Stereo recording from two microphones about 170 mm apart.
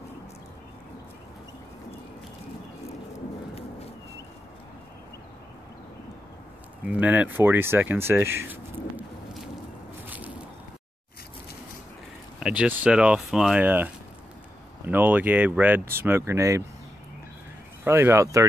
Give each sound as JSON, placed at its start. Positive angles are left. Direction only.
{"t": 6.9, "sound": "speech", "side_deg": -10}
{"t": 10.0, "sound": "a sound", "side_deg": -10}
{"t": 12.4, "sound": "speech", "side_deg": -5}
{"t": 14.9, "sound": "speech", "side_deg": -10}
{"t": 17.8, "sound": "speech", "side_deg": -15}